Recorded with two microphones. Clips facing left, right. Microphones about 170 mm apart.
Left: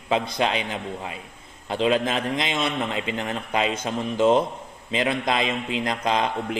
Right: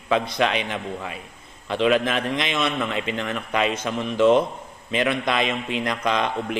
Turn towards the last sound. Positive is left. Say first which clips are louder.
# even
turn(degrees=25)  # may be behind; listen again after turning